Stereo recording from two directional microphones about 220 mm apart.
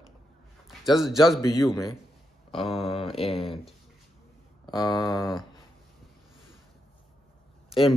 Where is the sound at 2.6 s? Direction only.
Centre (ahead or behind).